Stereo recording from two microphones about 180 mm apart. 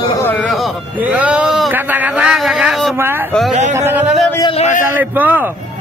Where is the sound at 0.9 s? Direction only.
10° right (ahead or behind).